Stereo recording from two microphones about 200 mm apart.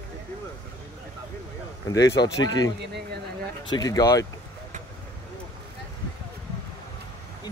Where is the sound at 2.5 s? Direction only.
20° left (ahead or behind).